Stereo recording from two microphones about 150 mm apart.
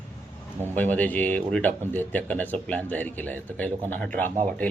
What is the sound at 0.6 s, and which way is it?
Speech, 10° left (ahead or behind).